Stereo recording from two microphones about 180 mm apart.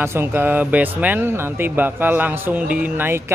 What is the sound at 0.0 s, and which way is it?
Speech, 15° right (ahead or behind).